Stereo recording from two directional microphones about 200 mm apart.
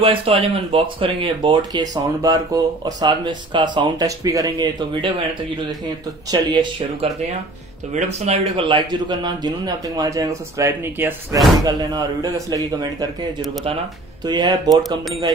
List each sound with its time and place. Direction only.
0.0 s a man's voice: 30° right (ahead or behind)
6.3 s a man's voice: 25° right (ahead or behind)
7.9 s a man's voice: 35° right (ahead or behind); by 13.1 s 20° right (ahead or behind)
14.2 s a man's voice: 20° right (ahead or behind)